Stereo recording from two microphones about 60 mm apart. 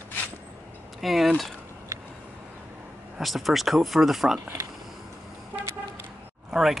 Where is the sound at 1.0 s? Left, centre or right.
Centre.